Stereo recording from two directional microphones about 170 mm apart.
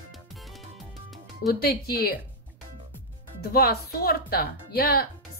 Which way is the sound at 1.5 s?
65° left (ahead or behind).